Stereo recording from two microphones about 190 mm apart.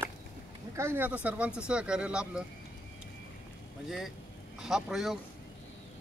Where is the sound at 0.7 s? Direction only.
10° right (ahead or behind).